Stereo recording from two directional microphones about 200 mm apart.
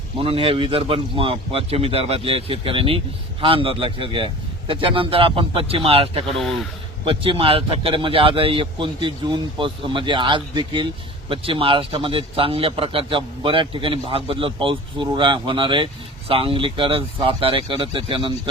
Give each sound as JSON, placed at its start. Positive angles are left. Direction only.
{"t": 0.2, "sound": "a man's voice", "side_deg": -25}
{"t": 6.3, "sound": "speech", "side_deg": 0}
{"t": 7.0, "sound": "a man's voice", "side_deg": -25}